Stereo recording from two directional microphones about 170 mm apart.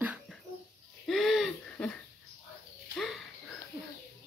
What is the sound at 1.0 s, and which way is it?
Throat clearing, centre (ahead or behind).